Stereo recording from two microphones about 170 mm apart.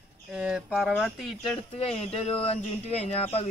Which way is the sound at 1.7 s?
35° left (ahead or behind).